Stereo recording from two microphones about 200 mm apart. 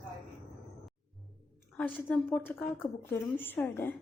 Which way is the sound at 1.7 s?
5° left (ahead or behind).